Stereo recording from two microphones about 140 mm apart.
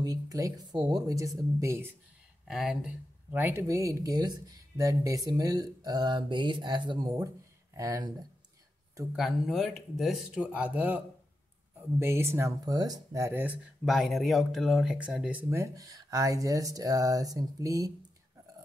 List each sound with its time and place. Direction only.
0.0 s speech: 25° right (ahead or behind)
2.4 s speech: 5° right (ahead or behind); by 8.1 s 25° right (ahead or behind)
9.1 s speech: centre (ahead or behind)
12.0 s speech: 20° right (ahead or behind)
13.8 s speech: centre (ahead or behind)
15.5 s speech: 20° right (ahead or behind)